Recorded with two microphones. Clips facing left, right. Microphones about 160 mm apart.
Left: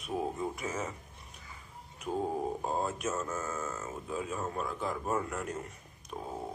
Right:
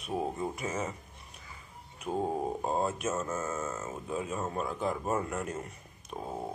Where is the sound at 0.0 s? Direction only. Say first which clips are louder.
Right 1 dB; 5° right (ahead or behind).